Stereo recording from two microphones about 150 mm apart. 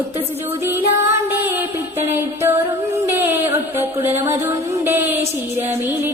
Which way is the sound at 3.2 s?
15° right (ahead or behind).